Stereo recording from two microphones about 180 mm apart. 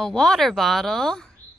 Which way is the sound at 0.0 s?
5° left (ahead or behind).